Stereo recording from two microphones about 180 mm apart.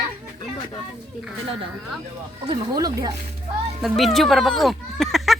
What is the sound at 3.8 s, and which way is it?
Speech, centre (ahead or behind).